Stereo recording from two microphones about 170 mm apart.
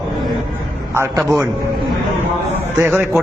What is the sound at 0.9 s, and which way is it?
Speech, 15° right (ahead or behind).